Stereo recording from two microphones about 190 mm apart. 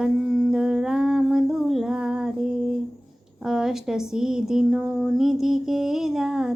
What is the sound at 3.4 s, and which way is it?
Speech, 5° right (ahead or behind).